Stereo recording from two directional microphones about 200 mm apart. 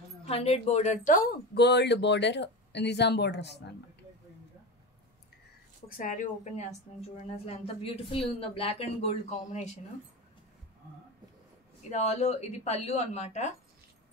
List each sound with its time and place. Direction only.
0.2 s speech: 30° left (ahead or behind); by 3.6 s 55° left (ahead or behind)
5.9 s speech: 45° left (ahead or behind)
11.9 s speech: 35° left (ahead or behind)